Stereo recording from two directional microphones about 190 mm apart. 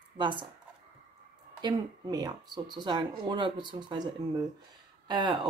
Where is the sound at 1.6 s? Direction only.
20° right (ahead or behind).